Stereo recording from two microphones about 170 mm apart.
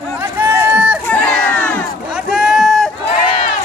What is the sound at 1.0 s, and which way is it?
Crowd, 5° left (ahead or behind).